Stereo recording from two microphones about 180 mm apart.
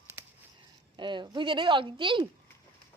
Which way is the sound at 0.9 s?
25° right (ahead or behind).